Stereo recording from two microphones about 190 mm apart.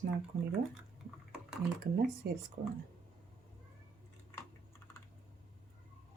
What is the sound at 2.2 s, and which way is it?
Speech, 60° right (ahead or behind).